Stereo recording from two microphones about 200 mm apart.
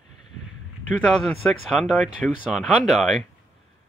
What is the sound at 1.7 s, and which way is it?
Speech, centre (ahead or behind).